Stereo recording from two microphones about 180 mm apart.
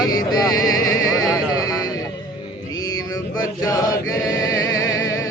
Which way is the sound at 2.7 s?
20° left (ahead or behind).